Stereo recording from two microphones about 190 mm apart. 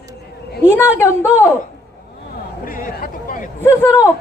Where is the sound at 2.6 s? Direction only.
50° left (ahead or behind).